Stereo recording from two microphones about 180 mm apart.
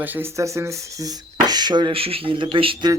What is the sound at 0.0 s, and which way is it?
Speech, 10° right (ahead or behind).